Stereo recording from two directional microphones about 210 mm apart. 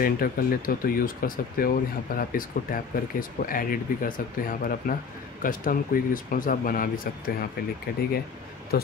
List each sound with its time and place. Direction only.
0.0 s speech: 45° left (ahead or behind)
8.7 s speech: 45° left (ahead or behind)